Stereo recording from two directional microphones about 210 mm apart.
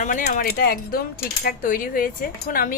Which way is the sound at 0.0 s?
40° left (ahead or behind).